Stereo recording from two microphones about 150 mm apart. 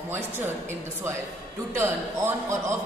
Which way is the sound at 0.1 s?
15° right (ahead or behind).